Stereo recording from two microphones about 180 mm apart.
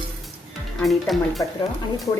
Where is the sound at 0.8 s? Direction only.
Centre (ahead or behind).